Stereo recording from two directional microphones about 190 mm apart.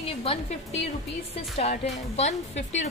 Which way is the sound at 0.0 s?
30° left (ahead or behind).